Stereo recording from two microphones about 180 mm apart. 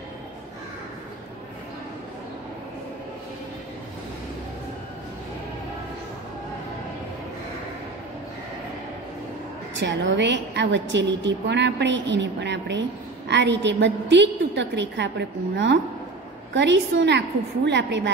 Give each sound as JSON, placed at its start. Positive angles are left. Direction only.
{"t": 9.8, "sound": "a woman's voice", "side_deg": -85}